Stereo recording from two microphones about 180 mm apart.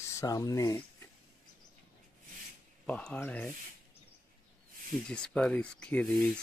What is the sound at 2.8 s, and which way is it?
Speech, 5° left (ahead or behind).